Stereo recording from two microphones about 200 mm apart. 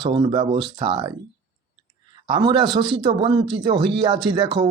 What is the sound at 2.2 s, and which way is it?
Speech, 25° right (ahead or behind).